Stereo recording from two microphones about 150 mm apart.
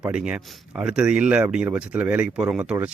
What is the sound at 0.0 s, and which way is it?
Speech, 10° right (ahead or behind).